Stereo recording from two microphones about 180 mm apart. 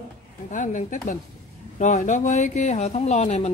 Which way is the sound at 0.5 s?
45° left (ahead or behind).